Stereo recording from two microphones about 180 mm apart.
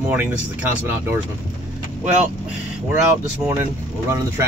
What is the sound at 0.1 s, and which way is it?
Speech, 10° right (ahead or behind).